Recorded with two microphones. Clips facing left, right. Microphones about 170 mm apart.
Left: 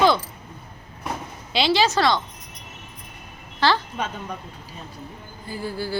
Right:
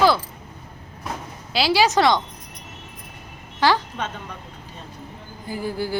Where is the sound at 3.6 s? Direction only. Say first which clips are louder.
Right 2 dB; 15° right (ahead or behind).